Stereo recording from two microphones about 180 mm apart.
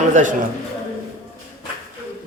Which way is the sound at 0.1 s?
45° right (ahead or behind).